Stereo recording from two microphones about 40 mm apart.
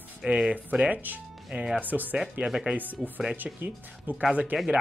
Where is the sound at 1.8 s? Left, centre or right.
Right.